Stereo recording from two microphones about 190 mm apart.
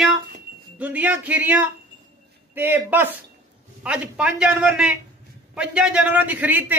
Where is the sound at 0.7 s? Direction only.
10° right (ahead or behind).